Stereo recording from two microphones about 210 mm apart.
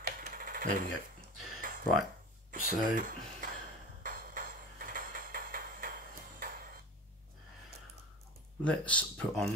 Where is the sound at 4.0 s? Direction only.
40° right (ahead or behind).